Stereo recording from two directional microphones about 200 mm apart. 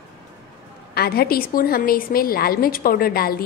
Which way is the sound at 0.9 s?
50° left (ahead or behind).